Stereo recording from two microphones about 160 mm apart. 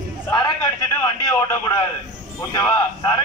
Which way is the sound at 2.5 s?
25° left (ahead or behind).